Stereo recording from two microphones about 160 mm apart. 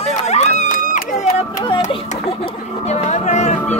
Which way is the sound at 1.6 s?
30° left (ahead or behind).